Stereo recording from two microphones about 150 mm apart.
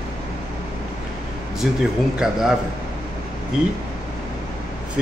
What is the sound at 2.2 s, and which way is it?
Speech, 5° right (ahead or behind).